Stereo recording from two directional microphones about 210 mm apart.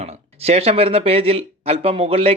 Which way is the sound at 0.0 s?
30° right (ahead or behind).